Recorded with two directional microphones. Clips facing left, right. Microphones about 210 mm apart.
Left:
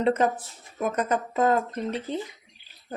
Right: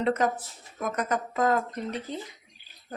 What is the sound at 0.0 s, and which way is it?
Speech, 30° left (ahead or behind).